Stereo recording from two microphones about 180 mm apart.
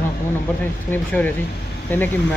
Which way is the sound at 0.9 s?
10° left (ahead or behind).